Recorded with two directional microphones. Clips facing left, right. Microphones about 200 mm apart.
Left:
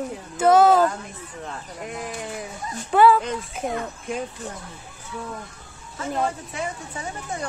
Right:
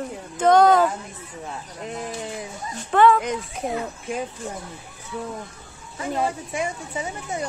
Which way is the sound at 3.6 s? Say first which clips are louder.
Even; 5° right (ahead or behind).